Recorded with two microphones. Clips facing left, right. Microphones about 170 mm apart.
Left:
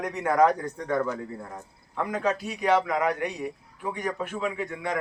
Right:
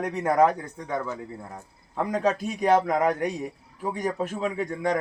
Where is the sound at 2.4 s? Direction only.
45° right (ahead or behind).